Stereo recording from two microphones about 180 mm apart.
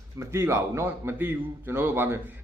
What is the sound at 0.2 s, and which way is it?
A man's voice, 15° right (ahead or behind).